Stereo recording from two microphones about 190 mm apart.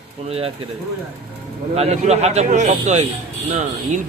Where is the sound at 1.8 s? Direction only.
35° right (ahead or behind).